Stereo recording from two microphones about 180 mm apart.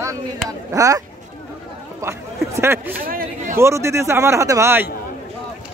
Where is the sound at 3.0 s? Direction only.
55° right (ahead or behind).